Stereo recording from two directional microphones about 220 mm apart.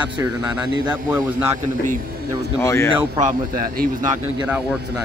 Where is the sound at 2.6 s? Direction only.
10° left (ahead or behind).